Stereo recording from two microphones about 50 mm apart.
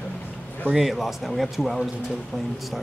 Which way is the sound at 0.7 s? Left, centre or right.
Centre.